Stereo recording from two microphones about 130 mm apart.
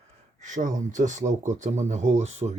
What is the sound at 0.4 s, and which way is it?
Speech, 70° right (ahead or behind).